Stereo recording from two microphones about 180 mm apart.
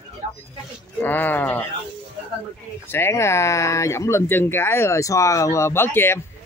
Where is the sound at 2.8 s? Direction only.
15° left (ahead or behind).